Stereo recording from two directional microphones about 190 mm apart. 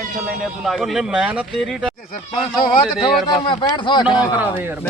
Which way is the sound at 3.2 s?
25° left (ahead or behind).